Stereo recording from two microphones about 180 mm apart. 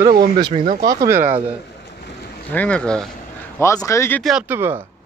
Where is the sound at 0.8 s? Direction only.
15° right (ahead or behind).